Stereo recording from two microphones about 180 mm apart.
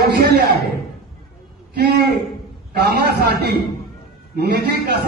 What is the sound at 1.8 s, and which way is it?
A man's voice, 60° right (ahead or behind).